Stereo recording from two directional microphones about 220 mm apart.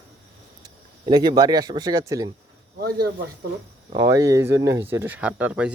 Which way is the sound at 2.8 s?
45° right (ahead or behind).